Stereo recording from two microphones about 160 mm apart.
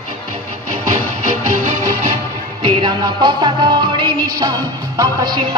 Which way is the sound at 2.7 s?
30° right (ahead or behind).